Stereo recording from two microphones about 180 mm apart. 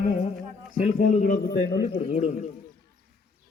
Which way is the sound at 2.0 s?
40° left (ahead or behind).